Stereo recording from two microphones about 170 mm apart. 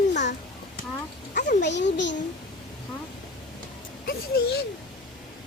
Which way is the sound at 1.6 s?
90° left.